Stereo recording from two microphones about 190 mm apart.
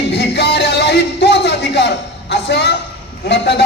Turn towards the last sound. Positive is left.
turn(degrees=65)  # may be behind; listen again after turning